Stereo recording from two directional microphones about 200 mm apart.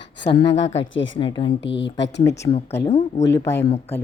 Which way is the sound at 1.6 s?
65° left (ahead or behind).